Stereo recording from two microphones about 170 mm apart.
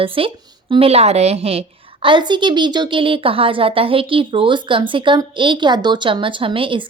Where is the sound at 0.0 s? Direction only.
30° right (ahead or behind).